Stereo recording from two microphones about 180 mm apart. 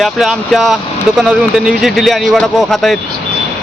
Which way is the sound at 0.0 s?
Centre (ahead or behind).